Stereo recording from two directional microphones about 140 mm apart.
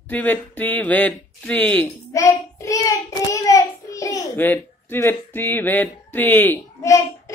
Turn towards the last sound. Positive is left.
turn(degrees=20)  # may be behind; listen again after turning